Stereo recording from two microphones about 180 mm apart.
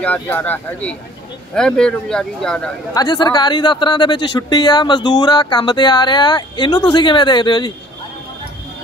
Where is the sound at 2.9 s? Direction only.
25° left (ahead or behind).